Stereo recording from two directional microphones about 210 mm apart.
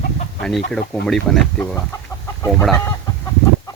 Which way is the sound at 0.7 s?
Centre (ahead or behind).